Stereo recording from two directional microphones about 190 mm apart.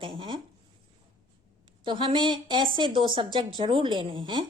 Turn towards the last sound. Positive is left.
turn(degrees=-20)  # may be behind; listen again after turning